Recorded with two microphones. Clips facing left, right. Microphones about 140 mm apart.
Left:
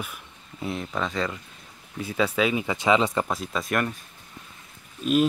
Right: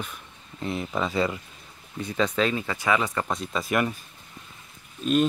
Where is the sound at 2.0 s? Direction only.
5° left (ahead or behind).